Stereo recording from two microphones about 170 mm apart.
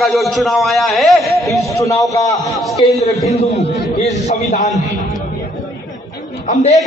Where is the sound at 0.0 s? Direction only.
Centre (ahead or behind).